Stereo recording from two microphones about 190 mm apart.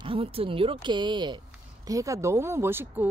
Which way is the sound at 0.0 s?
30° right (ahead or behind).